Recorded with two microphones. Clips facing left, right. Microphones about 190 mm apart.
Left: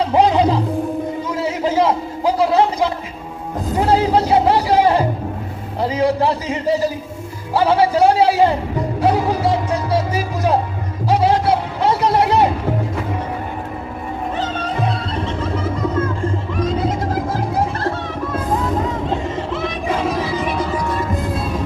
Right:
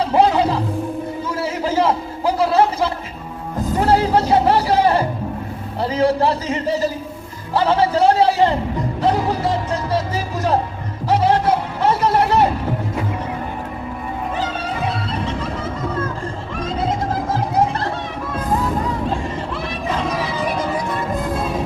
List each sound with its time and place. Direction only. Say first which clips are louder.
0.1 s music: left 1 dB; 15° left (ahead or behind)
1.3 s a sound: left 1 dB; 15° left (ahead or behind)
3.8 s speech: left 1 dB; 15° left (ahead or behind)
9.0 s music: left 2 dB; 10° left (ahead or behind)
11.1 s a sound: left 1 dB; 15° left (ahead or behind)
19.6 s music: left 3 dB; 10° left (ahead or behind)